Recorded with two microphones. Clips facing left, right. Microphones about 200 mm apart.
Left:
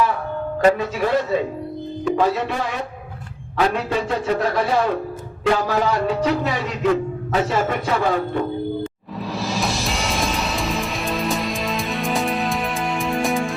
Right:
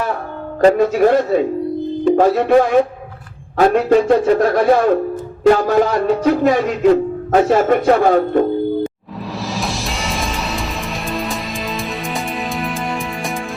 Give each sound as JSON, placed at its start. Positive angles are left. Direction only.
{"t": 0.8, "sound": "speech", "side_deg": -50}
{"t": 9.6, "sound": "music", "side_deg": 0}